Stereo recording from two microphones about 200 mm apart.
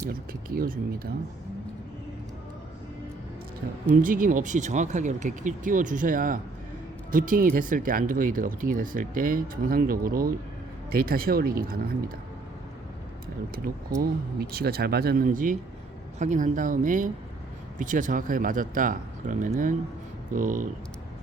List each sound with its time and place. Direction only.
0.1 s speech: 45° right (ahead or behind)
3.9 s speech: 40° right (ahead or behind)
14.5 s speech: 50° right (ahead or behind)